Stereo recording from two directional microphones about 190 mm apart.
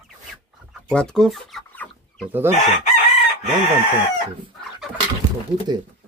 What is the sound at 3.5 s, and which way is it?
Speech, 25° right (ahead or behind).